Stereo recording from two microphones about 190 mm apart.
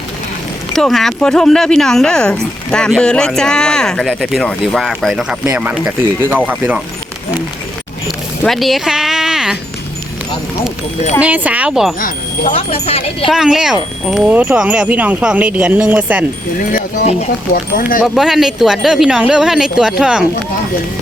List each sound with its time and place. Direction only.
0.7 s speech: centre (ahead or behind)
8.0 s a sound: centre (ahead or behind)
11.2 s speech: 10° right (ahead or behind)
12.5 s speech: 30° left (ahead or behind)
13.2 s speech: centre (ahead or behind)
17.5 s speech: 50° left (ahead or behind)
18.0 s speech: centre (ahead or behind)